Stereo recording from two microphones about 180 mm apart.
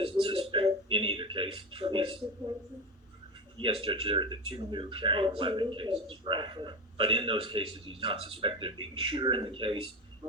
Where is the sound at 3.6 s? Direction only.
30° right (ahead or behind).